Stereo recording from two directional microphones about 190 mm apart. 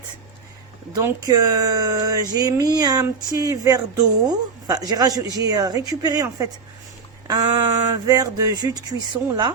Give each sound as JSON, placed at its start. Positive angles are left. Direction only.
{"t": 0.9, "sound": "speech", "side_deg": -20}